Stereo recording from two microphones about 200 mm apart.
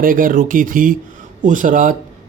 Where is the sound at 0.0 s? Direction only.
45° right (ahead or behind).